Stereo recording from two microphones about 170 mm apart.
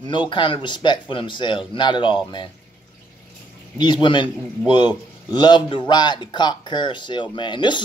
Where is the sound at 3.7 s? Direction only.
25° left (ahead or behind).